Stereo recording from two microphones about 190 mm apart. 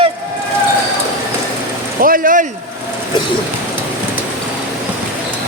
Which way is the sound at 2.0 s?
50° right (ahead or behind).